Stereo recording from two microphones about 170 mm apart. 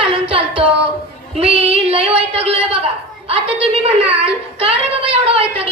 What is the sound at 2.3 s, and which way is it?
A woman's voice, 35° right (ahead or behind).